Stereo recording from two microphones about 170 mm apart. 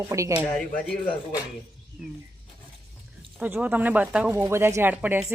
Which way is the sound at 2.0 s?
5° right (ahead or behind).